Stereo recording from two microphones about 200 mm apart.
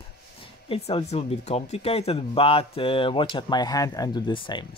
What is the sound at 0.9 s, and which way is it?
Speech, 30° left (ahead or behind).